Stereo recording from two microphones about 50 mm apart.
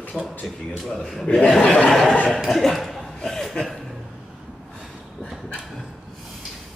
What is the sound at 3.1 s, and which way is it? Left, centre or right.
Chuckle, centre.